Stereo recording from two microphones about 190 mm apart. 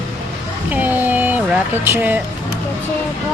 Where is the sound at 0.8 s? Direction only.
10° right (ahead or behind).